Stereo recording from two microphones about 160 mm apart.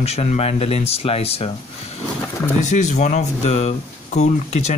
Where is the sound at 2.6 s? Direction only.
50° left (ahead or behind).